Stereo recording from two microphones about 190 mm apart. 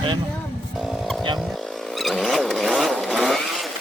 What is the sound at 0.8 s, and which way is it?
Vehicle, centre (ahead or behind).